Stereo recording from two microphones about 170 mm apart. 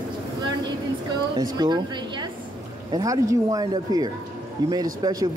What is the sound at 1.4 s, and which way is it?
Speech, 25° right (ahead or behind).